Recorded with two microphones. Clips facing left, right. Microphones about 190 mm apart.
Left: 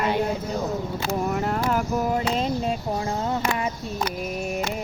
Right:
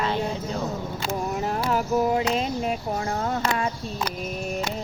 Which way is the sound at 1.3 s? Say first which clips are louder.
Left 2 dB; 60° left (ahead or behind).